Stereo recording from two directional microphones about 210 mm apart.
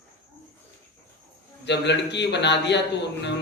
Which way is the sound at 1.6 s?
55° left (ahead or behind).